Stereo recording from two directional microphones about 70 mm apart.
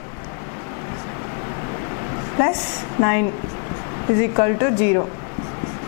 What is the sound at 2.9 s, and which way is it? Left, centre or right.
A woman's voice, centre.